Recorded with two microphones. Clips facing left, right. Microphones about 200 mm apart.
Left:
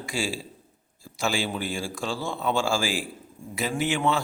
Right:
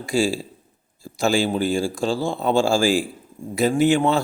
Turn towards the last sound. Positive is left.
turn(degrees=-35)  # may be behind; listen again after turning